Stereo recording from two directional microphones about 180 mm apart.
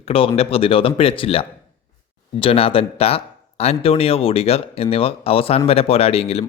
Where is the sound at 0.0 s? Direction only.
30° left (ahead or behind).